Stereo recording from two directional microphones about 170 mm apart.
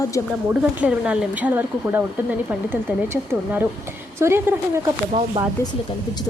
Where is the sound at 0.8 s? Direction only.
5° right (ahead or behind).